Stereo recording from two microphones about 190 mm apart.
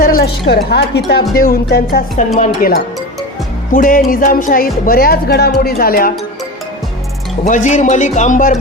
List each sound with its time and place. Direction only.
0.0 s a sound: 50° left (ahead or behind)
0.5 s speech: 60° left (ahead or behind)
1.4 s speech: 50° left (ahead or behind)
7.4 s speech: 40° left (ahead or behind)